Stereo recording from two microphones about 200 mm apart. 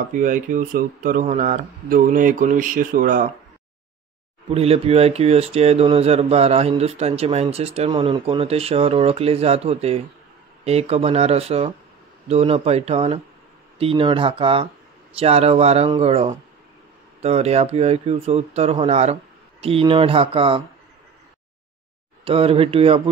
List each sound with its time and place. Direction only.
0.1 s speech: 40° right (ahead or behind)
4.5 s speech: 30° right (ahead or behind)
22.2 s speech: 30° right (ahead or behind)